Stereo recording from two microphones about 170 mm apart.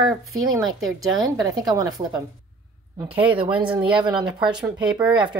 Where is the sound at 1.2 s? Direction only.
20° right (ahead or behind).